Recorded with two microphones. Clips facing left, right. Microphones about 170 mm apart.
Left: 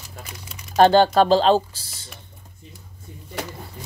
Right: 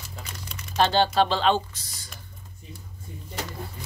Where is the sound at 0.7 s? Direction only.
45° left (ahead or behind); by 2.0 s 30° left (ahead or behind).